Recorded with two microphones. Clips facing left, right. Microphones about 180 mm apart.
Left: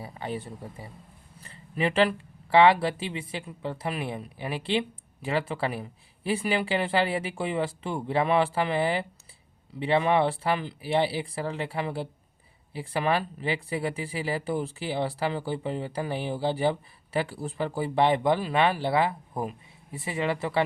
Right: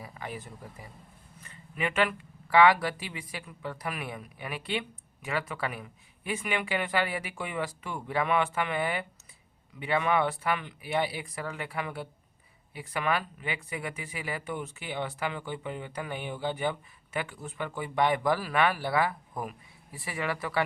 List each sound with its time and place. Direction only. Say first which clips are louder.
0.0 s speech: left 6 dB; 30° left (ahead or behind)